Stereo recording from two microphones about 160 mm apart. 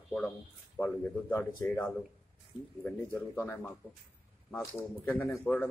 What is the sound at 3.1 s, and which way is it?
Speech, 15° left (ahead or behind).